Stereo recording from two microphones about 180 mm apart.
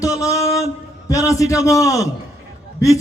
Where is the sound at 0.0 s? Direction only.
20° left (ahead or behind).